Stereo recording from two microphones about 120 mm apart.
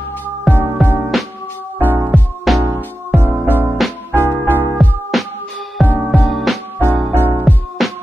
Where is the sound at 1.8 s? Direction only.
15° right (ahead or behind).